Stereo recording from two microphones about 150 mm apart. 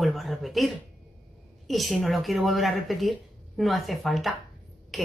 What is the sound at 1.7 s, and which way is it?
A woman's voice, centre (ahead or behind).